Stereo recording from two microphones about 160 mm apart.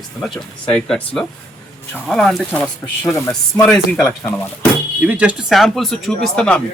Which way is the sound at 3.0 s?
15° left (ahead or behind).